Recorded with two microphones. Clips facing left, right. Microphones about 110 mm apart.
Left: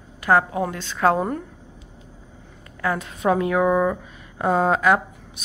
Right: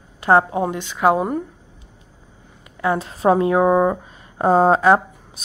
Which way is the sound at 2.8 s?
25° right (ahead or behind).